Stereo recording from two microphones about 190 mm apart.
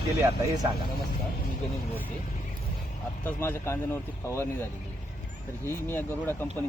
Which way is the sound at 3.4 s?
15° left (ahead or behind).